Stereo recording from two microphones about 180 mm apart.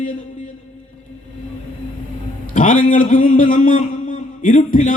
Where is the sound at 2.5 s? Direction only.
45° left (ahead or behind).